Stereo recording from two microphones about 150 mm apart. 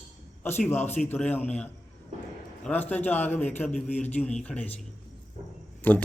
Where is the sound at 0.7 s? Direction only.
15° left (ahead or behind).